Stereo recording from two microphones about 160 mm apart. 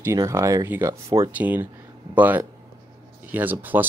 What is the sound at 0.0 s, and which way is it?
Speech, 20° right (ahead or behind).